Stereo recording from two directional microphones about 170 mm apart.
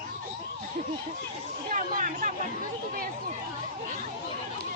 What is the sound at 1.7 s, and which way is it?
Speech, 50° right (ahead or behind).